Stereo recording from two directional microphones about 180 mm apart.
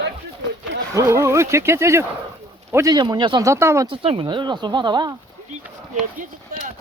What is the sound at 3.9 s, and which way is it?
Speech, 30° right (ahead or behind).